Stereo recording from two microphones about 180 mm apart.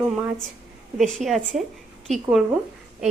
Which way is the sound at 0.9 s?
Centre (ahead or behind).